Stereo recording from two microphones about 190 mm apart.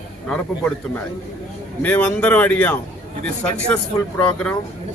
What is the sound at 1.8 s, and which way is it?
A man's voice, 10° left (ahead or behind).